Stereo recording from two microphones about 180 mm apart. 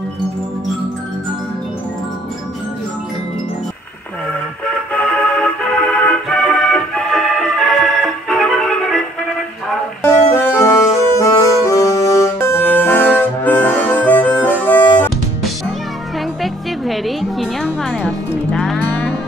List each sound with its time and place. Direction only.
4.9 s music: 5° left (ahead or behind)
10.3 s music: 15° left (ahead or behind)
16.8 s music: centre (ahead or behind)
18.5 s livestock: 5° left (ahead or behind)